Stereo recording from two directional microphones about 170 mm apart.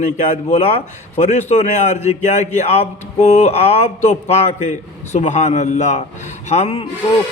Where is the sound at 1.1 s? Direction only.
40° left (ahead or behind).